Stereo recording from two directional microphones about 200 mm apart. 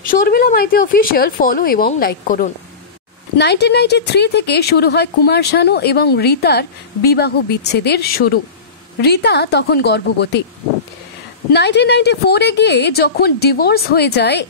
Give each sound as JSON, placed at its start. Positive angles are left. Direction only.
{"t": 0.1, "sound": "speech", "side_deg": 45}
{"t": 3.3, "sound": "speech", "side_deg": 55}
{"t": 11.5, "sound": "speech", "side_deg": 60}